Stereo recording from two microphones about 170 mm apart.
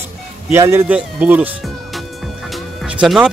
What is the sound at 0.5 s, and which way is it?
Speech, 15° right (ahead or behind).